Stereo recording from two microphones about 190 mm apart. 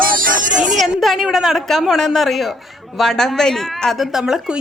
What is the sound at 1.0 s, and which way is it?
A woman's voice, centre (ahead or behind).